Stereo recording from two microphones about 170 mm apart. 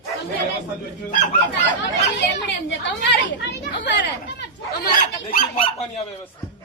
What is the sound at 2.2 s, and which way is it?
Speech, 90° left.